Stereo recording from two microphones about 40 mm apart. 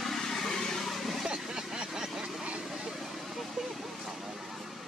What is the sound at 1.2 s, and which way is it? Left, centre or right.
Vehicle, centre.